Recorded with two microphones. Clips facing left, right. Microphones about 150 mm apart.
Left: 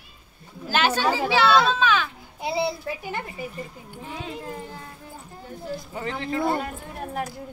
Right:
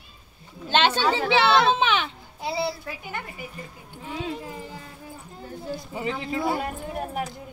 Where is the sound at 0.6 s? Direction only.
25° right (ahead or behind).